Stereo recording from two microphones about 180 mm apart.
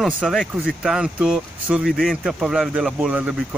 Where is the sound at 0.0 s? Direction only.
Centre (ahead or behind).